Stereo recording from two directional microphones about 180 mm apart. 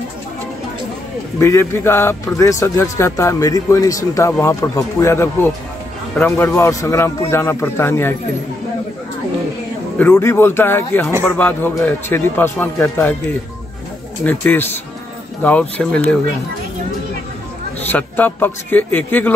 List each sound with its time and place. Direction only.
1.4 s speech: 15° left (ahead or behind)
9.9 s speech: 10° left (ahead or behind)
14.2 s speech: 10° left (ahead or behind)
15.8 s speech: 5° left (ahead or behind)
17.8 s speech: 10° left (ahead or behind)